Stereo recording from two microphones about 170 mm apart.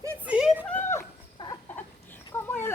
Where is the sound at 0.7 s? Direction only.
15° left (ahead or behind).